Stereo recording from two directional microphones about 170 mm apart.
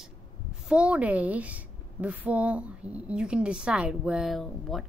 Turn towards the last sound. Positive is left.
turn(degrees=0)  # may be behind; listen again after turning